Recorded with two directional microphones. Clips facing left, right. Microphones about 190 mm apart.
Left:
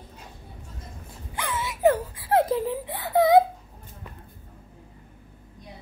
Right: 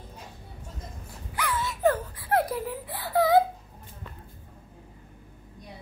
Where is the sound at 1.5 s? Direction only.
15° left (ahead or behind).